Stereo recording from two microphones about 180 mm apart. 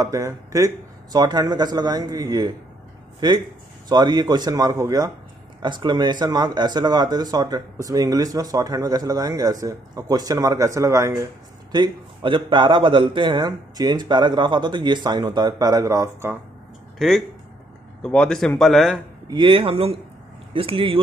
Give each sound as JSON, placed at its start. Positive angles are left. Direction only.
{"t": 0.0, "sound": "speech", "side_deg": -15}
{"t": 18.0, "sound": "a man's voice", "side_deg": 5}
{"t": 19.3, "sound": "speech", "side_deg": -30}